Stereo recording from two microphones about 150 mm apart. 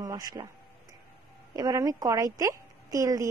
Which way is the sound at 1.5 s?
25° right (ahead or behind).